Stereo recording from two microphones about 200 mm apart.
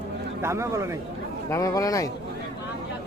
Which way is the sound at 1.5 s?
15° left (ahead or behind).